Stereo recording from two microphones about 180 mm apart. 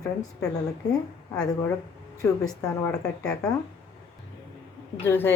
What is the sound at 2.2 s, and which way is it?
Speech, 20° left (ahead or behind).